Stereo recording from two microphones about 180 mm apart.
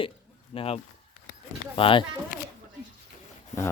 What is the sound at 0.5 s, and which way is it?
Speech, 30° left (ahead or behind).